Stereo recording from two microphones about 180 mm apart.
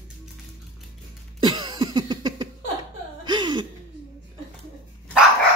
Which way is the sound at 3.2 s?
25° right (ahead or behind).